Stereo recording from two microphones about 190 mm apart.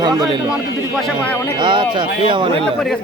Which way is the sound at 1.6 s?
25° right (ahead or behind).